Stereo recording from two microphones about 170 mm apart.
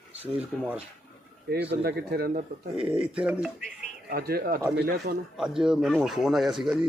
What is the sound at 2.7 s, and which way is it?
Speech, 5° right (ahead or behind).